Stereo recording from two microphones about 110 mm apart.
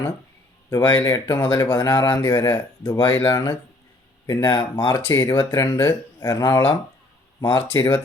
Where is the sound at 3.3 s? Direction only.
30° left (ahead or behind).